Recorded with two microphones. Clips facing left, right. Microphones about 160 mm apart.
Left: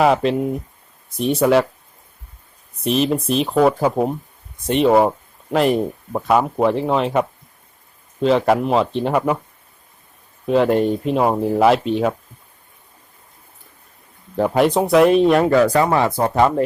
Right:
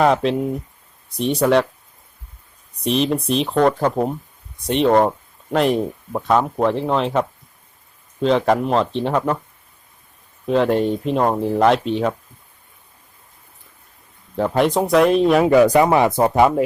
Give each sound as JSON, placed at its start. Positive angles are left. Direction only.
{"t": 0.0, "sound": "speech", "side_deg": 5}
{"t": 2.8, "sound": "speech", "side_deg": 0}
{"t": 10.4, "sound": "speech", "side_deg": 5}
{"t": 14.3, "sound": "speech", "side_deg": 5}
{"t": 15.4, "sound": "speech", "side_deg": -15}